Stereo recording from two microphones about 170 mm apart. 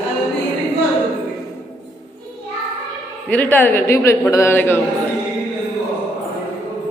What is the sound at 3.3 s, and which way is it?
A woman's voice, 10° left (ahead or behind).